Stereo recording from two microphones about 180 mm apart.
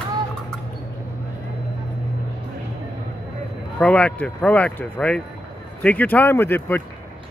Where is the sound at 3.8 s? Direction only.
5° left (ahead or behind).